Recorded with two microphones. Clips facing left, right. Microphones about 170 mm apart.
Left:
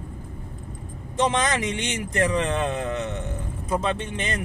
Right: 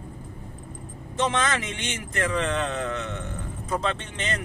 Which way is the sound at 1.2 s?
15° left (ahead or behind).